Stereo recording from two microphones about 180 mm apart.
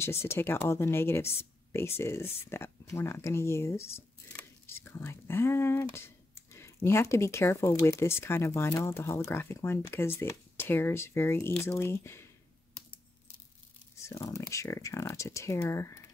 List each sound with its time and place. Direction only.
0.0 s speech: 15° left (ahead or behind)
14.0 s speech: 15° left (ahead or behind)